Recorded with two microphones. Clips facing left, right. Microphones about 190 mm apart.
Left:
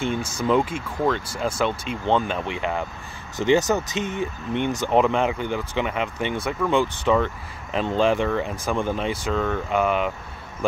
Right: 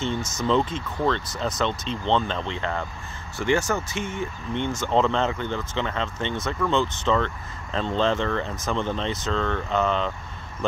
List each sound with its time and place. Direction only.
0.2 s speech: 30° left (ahead or behind)
0.5 s speech: 10° left (ahead or behind)